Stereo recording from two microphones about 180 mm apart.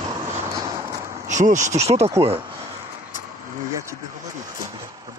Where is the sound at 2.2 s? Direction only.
15° right (ahead or behind).